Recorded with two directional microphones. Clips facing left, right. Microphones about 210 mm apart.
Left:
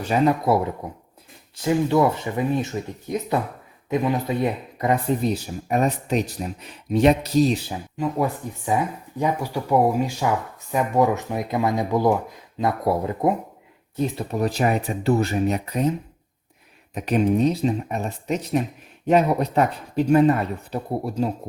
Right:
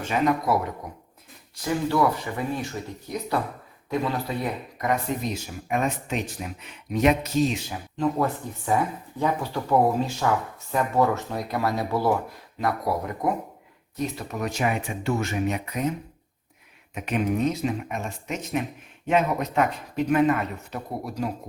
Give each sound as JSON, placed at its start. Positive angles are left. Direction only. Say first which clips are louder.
{"t": 0.0, "sound": "speech", "louder": "left 4 dB", "side_deg": 35}
{"t": 7.9, "sound": "speech", "louder": "even", "side_deg": 10}